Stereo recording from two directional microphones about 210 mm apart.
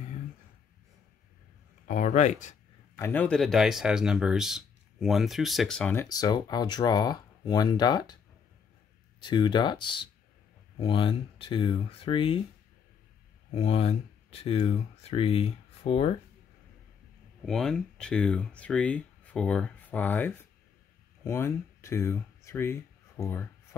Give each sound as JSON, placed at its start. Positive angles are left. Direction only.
{"t": 1.9, "sound": "speech", "side_deg": 35}
{"t": 3.0, "sound": "speech", "side_deg": 10}
{"t": 9.2, "sound": "speech", "side_deg": 20}
{"t": 13.6, "sound": "speech", "side_deg": 30}
{"t": 17.5, "sound": "speech", "side_deg": 0}